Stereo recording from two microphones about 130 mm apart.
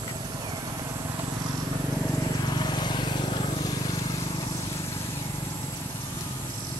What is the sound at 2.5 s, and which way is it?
Vehicle, 35° left (ahead or behind).